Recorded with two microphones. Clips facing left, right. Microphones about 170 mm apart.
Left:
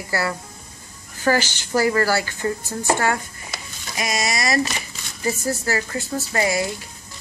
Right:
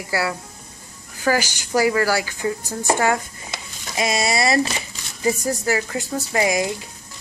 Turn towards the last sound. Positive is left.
turn(degrees=-15)  # may be behind; listen again after turning